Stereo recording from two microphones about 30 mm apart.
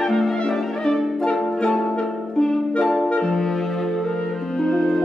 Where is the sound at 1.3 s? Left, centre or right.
Centre.